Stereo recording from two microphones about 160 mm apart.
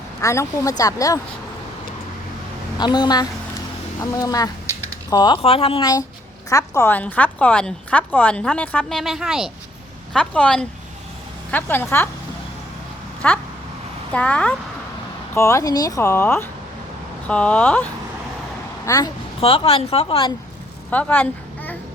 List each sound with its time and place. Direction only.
0.2 s a woman's voice: 20° left (ahead or behind)
2.7 s a woman's voice: 25° left (ahead or behind)
5.8 s a woman's voice: 20° left (ahead or behind)
13.2 s a woman's voice: 10° left (ahead or behind)
15.4 s a woman's voice: 20° left (ahead or behind)
18.9 s a woman's voice: 20° left (ahead or behind)
19.4 s speech: 35° left (ahead or behind)
20.9 s a child's voice: 10° left (ahead or behind)